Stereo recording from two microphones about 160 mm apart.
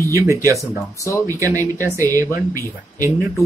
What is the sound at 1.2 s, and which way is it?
Speech, 20° right (ahead or behind).